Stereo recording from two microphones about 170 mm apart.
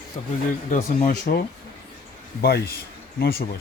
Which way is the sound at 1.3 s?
50° left (ahead or behind).